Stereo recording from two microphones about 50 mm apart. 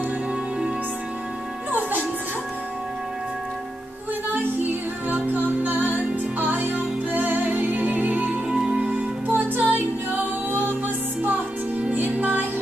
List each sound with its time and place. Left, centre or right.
1.7 s music: right
5.1 s music: right
8.5 s music: centre
9.3 s music: right
11.8 s music: right